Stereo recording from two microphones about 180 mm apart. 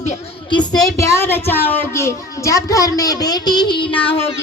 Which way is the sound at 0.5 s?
20° left (ahead or behind).